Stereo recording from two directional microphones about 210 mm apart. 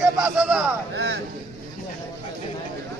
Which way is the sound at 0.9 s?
55° right (ahead or behind).